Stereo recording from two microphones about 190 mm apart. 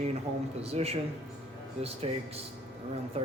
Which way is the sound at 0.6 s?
35° right (ahead or behind).